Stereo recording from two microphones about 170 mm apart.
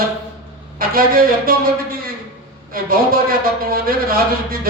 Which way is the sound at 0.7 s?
55° right (ahead or behind).